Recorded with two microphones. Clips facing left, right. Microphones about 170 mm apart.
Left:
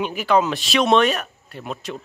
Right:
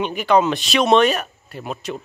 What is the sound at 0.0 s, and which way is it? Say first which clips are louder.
A man's voice: right 2 dB; 5° left (ahead or behind).